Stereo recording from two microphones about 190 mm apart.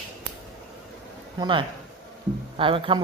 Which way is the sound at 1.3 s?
25° right (ahead or behind).